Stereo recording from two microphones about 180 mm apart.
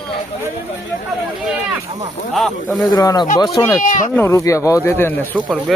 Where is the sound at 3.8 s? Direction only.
45° left (ahead or behind).